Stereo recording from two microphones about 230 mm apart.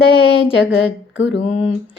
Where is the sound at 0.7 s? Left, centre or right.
Left.